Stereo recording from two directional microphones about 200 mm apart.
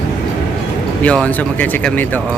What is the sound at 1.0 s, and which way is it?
Speech, 5° left (ahead or behind).